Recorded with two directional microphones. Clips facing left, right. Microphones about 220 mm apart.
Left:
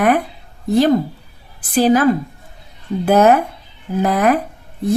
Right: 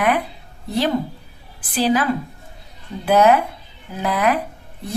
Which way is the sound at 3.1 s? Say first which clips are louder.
Left 2 dB; 45° left (ahead or behind).